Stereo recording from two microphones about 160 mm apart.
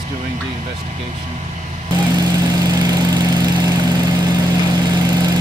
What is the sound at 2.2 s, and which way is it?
Vehicle, 25° right (ahead or behind).